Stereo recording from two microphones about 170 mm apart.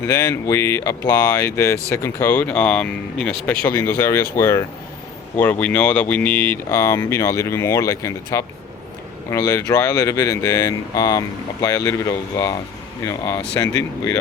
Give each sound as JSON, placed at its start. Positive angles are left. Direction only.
{"t": 0.0, "sound": "speech", "side_deg": 20}